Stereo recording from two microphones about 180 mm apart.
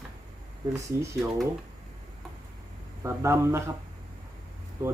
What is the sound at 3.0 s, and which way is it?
Speech, 15° right (ahead or behind).